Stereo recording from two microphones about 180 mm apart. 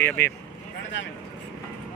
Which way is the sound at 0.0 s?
15° left (ahead or behind).